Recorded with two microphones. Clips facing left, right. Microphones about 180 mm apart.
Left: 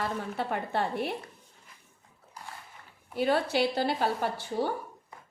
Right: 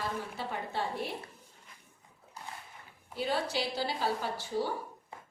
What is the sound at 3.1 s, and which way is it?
A woman's voice, 60° left (ahead or behind).